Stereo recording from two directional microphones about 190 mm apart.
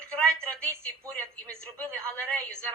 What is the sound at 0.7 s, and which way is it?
Speech, 15° right (ahead or behind).